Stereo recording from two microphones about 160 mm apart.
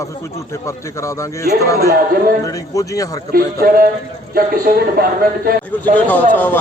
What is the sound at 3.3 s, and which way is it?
A man's voice, 70° right (ahead or behind).